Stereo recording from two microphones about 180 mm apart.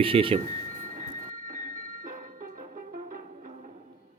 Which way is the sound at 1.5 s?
50° right (ahead or behind).